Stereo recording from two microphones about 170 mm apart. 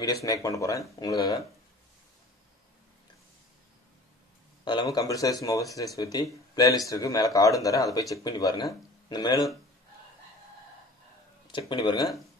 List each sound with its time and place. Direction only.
0.0 s speech: 20° left (ahead or behind)
4.6 s speech: 25° left (ahead or behind)
11.4 s speech: 25° left (ahead or behind)